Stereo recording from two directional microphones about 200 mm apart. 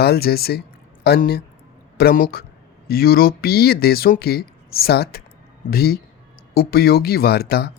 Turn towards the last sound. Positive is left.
turn(degrees=50)  # may be behind; listen again after turning